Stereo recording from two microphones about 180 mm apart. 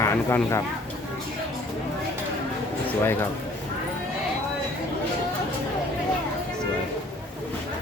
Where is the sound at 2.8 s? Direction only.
10° left (ahead or behind).